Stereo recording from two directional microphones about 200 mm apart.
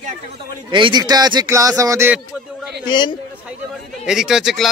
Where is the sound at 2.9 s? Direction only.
20° left (ahead or behind).